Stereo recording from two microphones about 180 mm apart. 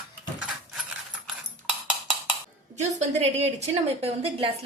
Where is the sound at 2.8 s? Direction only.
40° right (ahead or behind).